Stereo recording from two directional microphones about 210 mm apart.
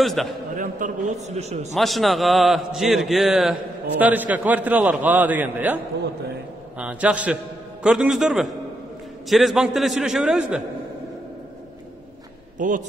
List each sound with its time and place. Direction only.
0.0 s a man's voice: centre (ahead or behind)
0.6 s a man's voice: 40° right (ahead or behind)
1.7 s a man's voice: centre (ahead or behind)
6.8 s a man's voice: 5° right (ahead or behind)
12.5 s a man's voice: 40° right (ahead or behind)